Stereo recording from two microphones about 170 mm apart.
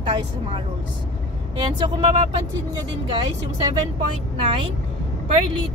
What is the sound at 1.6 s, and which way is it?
Speech, 25° right (ahead or behind).